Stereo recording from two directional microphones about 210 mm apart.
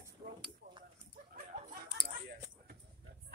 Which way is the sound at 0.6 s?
50° right (ahead or behind).